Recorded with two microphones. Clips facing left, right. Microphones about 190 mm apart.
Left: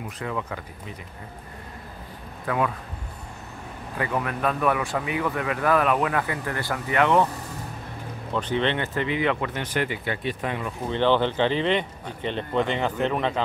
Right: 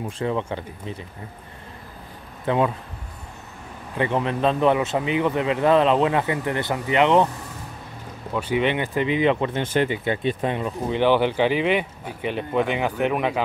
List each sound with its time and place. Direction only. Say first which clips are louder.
0.2 s speech: right 6 dB; 30° right (ahead or behind)
2.4 s speech: right 4 dB; 25° right (ahead or behind)
4.0 s speech: right 5 dB; 25° right (ahead or behind)
8.3 s speech: right 2 dB; 10° right (ahead or behind); by 10.7 s 25° right (ahead or behind)
10.9 s speech: right 2 dB; 10° right (ahead or behind)